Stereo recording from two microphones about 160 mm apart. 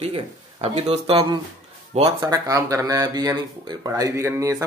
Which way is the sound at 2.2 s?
20° right (ahead or behind).